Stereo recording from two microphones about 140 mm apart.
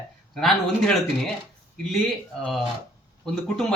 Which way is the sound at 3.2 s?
5° left (ahead or behind).